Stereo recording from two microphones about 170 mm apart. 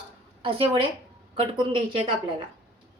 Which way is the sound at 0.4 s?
35° right (ahead or behind).